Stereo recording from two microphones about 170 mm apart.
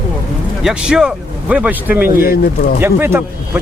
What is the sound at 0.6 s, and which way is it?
Speech, 5° right (ahead or behind).